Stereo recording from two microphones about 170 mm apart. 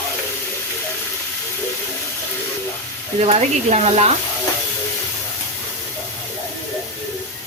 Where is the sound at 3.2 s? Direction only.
35° right (ahead or behind).